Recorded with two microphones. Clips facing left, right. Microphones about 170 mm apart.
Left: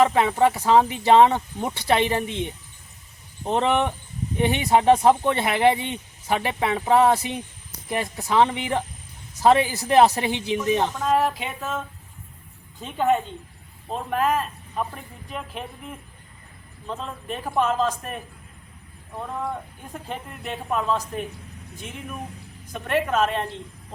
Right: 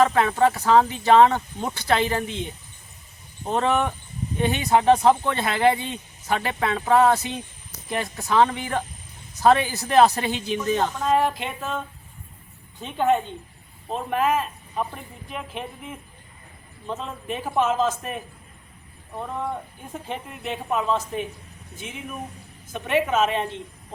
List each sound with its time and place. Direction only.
0.0 s speech: 15° left (ahead or behind)
3.4 s speech: 20° left (ahead or behind)
10.9 s a woman's voice: centre (ahead or behind)
19.2 s a woman's voice: 5° right (ahead or behind)